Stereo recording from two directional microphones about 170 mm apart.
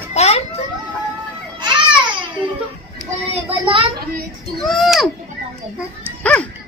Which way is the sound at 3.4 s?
30° right (ahead or behind).